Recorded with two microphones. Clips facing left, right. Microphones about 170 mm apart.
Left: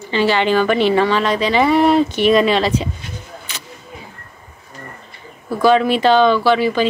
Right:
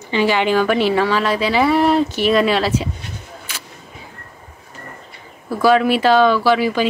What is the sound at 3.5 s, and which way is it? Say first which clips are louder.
Vehicle: right 1 dB; 10° right (ahead or behind).